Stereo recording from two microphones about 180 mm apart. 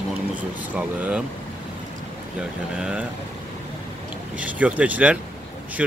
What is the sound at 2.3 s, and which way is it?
Speech, 5° right (ahead or behind).